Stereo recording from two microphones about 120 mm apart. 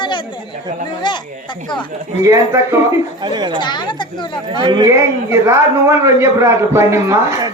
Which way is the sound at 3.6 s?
40° left (ahead or behind).